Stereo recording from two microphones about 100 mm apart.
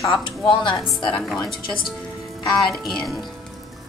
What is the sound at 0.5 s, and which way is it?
Speech, 55° left (ahead or behind).